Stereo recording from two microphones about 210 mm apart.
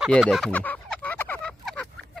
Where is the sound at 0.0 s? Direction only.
Centre (ahead or behind).